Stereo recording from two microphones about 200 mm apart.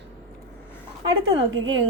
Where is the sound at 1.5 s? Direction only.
75° right (ahead or behind).